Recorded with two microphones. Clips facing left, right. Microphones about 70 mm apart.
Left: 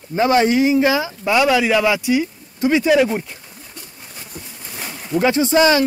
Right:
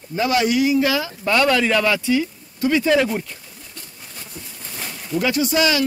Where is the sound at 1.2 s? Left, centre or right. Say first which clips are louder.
Left 2 dB; centre.